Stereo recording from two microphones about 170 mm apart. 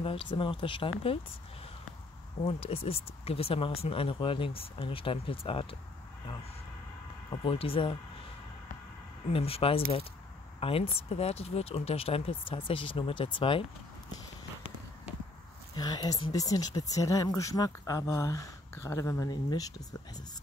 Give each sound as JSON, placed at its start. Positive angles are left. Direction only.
{"t": 0.0, "sound": "speech", "side_deg": 30}
{"t": 2.4, "sound": "speech", "side_deg": 35}
{"t": 7.2, "sound": "speech", "side_deg": 35}
{"t": 9.3, "sound": "speech", "side_deg": 35}
{"t": 15.7, "sound": "speech", "side_deg": 25}